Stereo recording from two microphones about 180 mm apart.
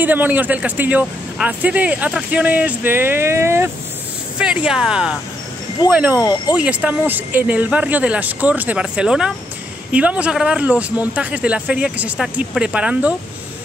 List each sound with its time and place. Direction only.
0.0 s speech: 10° right (ahead or behind)
6.1 s speech: 20° left (ahead or behind)
6.5 s speech: 5° right (ahead or behind)